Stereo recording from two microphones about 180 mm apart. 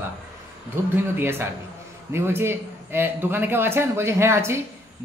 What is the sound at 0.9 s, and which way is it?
Speech, 10° right (ahead or behind).